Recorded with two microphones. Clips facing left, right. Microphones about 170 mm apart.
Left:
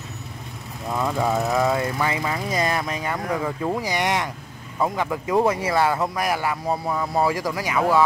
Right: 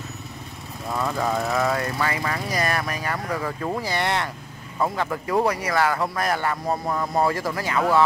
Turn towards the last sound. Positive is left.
turn(degrees=10)  # may be behind; listen again after turning